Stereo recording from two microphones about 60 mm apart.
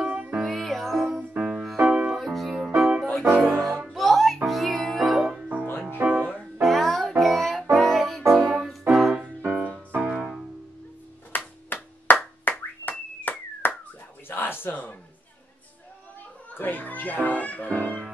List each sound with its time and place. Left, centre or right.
0.0 s music: centre
0.4 s music: centre
1.9 s music: centre
2.1 s music: centre
2.7 s music: centre
3.5 s music: centre
5.7 s music: left
5.9 s music: centre
6.6 s music: centre
8.8 s music: centre
11.3 s clapping: left
14.2 s a sound: left
16.5 s music: left